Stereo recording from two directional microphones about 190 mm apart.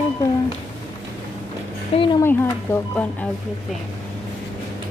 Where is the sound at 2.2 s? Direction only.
10° left (ahead or behind).